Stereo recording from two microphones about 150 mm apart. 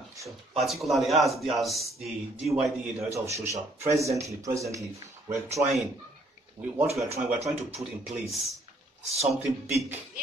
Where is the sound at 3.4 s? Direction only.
20° right (ahead or behind).